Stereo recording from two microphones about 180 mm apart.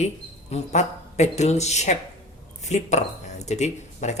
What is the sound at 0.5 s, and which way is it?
Speech, 40° left (ahead or behind).